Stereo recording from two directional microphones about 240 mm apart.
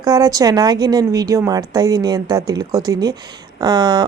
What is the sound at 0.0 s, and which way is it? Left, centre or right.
Speech, centre.